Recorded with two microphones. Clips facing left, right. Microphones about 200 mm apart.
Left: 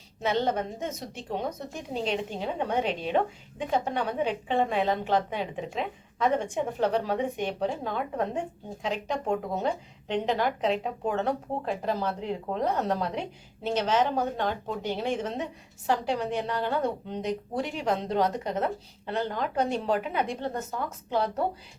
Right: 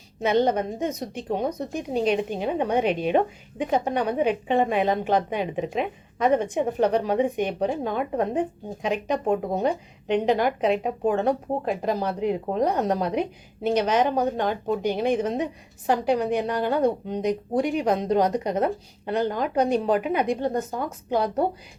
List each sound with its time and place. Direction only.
0.2 s a woman's voice: 15° right (ahead or behind)